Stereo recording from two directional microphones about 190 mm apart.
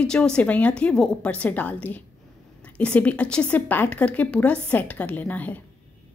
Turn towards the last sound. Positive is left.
turn(degrees=10)  # may be behind; listen again after turning